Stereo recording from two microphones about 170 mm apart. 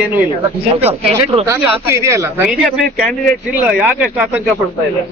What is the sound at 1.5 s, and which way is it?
Speech, 15° right (ahead or behind).